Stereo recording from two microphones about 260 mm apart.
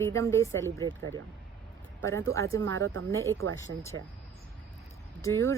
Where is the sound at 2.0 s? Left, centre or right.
Centre.